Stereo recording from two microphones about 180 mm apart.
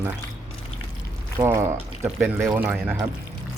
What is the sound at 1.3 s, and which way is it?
Speech, 15° right (ahead or behind).